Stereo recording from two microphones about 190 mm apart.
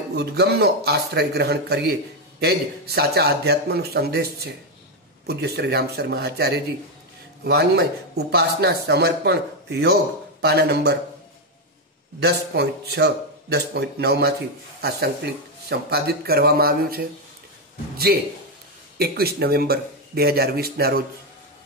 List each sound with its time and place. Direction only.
0.1 s speech: 60° right (ahead or behind)
12.2 s a man's voice: 60° right (ahead or behind)